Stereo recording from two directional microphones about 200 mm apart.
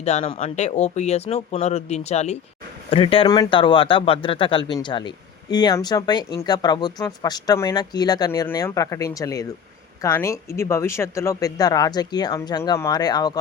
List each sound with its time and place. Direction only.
0.0 s speech: 35° left (ahead or behind)